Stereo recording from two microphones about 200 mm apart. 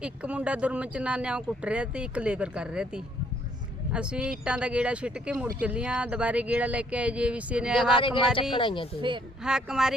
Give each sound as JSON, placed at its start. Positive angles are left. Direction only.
{"t": 0.0, "sound": "speech", "side_deg": -5}
{"t": 7.9, "sound": "speech", "side_deg": 25}
{"t": 9.0, "sound": "speech", "side_deg": -25}
{"t": 9.4, "sound": "speech", "side_deg": -5}